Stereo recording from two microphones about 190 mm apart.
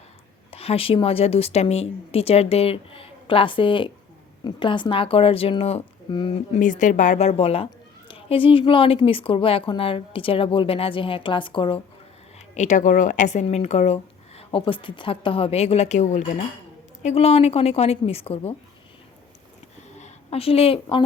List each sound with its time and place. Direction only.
0.5 s speech: 30° left (ahead or behind)
12.5 s speech: 40° left (ahead or behind)
20.0 s a woman's voice: 30° left (ahead or behind)